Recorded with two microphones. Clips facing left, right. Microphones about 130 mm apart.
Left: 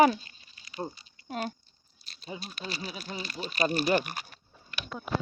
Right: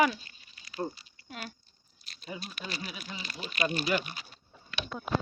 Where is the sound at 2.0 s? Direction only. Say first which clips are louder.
Left 1 dB; 30° left (ahead or behind); by 4.4 s 55° left (ahead or behind).